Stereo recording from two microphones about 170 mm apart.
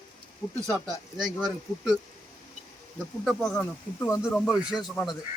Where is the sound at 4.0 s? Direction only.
20° left (ahead or behind).